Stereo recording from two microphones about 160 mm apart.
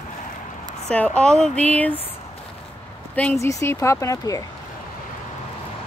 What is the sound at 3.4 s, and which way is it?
Speech, 20° left (ahead or behind).